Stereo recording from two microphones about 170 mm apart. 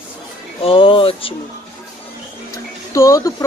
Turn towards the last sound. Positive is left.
turn(degrees=20)  # may be behind; listen again after turning